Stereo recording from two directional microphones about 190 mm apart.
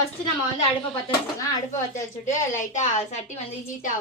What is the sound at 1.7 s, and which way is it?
A woman's voice, 40° left (ahead or behind).